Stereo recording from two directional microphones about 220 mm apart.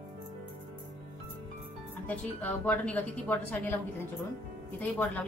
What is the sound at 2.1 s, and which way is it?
A woman's voice, 5° left (ahead or behind).